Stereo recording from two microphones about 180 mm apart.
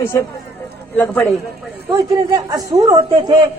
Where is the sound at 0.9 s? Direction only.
10° left (ahead or behind).